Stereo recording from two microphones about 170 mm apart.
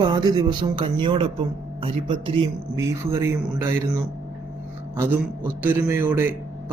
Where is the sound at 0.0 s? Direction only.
25° right (ahead or behind).